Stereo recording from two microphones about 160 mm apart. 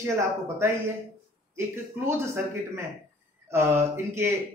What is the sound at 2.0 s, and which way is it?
Speech, 15° right (ahead or behind).